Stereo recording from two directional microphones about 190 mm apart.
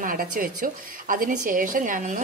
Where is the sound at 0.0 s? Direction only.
50° right (ahead or behind).